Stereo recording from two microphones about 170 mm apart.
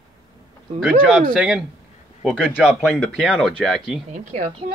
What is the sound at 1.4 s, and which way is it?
A man's voice, centre (ahead or behind).